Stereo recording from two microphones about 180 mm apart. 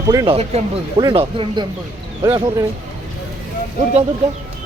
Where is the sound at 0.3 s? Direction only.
35° right (ahead or behind).